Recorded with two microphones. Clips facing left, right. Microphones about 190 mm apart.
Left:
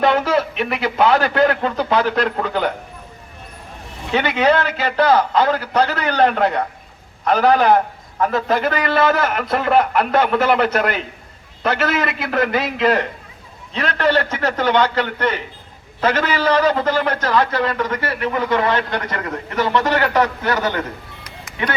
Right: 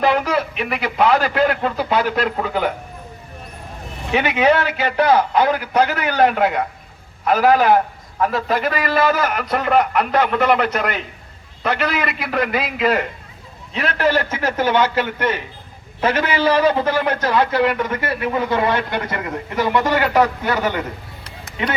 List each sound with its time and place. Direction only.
0.0 s a man's voice: centre (ahead or behind)
4.1 s a man's voice: 10° right (ahead or behind)